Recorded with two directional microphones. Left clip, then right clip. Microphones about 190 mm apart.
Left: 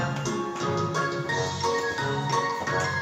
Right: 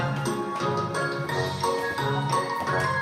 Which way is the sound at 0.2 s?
25° right (ahead or behind).